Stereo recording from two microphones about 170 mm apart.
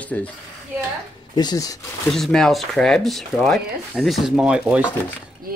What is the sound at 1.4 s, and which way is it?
Speech, 25° left (ahead or behind).